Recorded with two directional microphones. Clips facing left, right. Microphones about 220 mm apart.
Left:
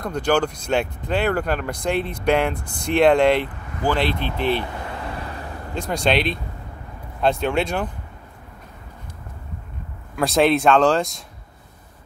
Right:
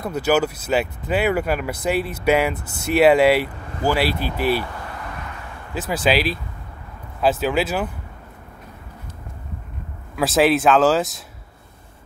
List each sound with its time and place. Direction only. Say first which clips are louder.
0.0 s speech: right 1 dB; 5° right (ahead or behind)
5.1 s vehicle: left 3 dB; 35° left (ahead or behind)
5.8 s speech: right 1 dB; 5° right (ahead or behind)
10.1 s speech: even; centre (ahead or behind)